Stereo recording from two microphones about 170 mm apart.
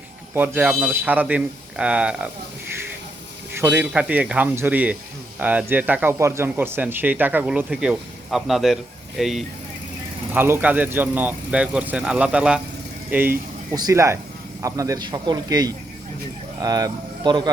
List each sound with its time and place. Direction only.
0.3 s speech: 10° right (ahead or behind)
3.5 s speech: 15° right (ahead or behind)
10.3 s speech: 10° right (ahead or behind)